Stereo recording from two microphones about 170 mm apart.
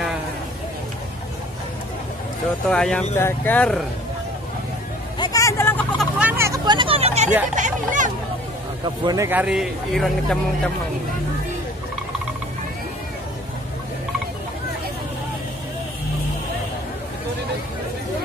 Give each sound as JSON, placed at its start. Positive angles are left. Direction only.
{"t": 2.7, "sound": "speech", "side_deg": 5}
{"t": 5.2, "sound": "vehicle", "side_deg": 20}
{"t": 6.1, "sound": "vehicle", "side_deg": -10}
{"t": 7.5, "sound": "speech", "side_deg": -45}
{"t": 8.8, "sound": "speech", "side_deg": -25}